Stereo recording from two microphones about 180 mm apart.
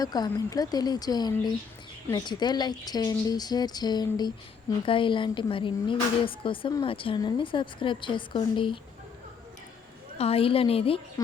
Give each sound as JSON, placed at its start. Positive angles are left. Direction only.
{"t": 0.0, "sound": "speech", "side_deg": 20}
{"t": 10.2, "sound": "a woman's voice", "side_deg": 35}